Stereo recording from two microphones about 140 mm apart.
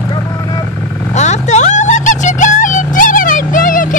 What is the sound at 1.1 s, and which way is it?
Vehicle, 55° left (ahead or behind).